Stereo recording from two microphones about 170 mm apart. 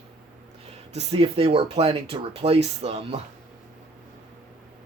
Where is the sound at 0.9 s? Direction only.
35° right (ahead or behind).